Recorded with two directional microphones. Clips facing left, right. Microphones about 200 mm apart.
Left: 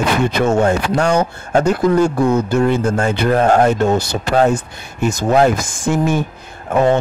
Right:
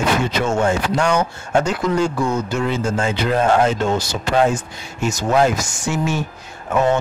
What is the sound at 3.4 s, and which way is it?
Speech, 45° left (ahead or behind).